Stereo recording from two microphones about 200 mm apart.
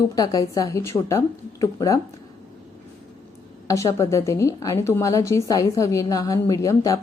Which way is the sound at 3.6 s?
15° left (ahead or behind).